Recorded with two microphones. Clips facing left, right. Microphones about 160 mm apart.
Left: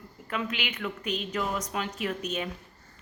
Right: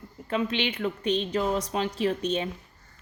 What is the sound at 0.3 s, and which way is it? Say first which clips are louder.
Speech: right 6 dB; 25° right (ahead or behind).